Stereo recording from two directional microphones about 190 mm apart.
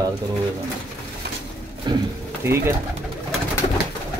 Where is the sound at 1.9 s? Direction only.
25° right (ahead or behind).